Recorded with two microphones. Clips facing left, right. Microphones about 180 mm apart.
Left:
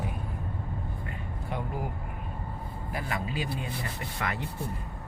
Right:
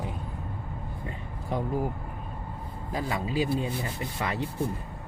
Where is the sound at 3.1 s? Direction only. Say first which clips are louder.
Right 7 dB; 25° right (ahead or behind).